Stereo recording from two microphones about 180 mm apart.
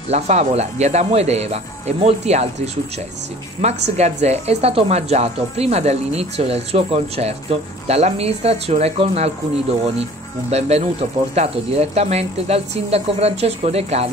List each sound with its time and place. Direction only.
0.1 s speech: 35° right (ahead or behind)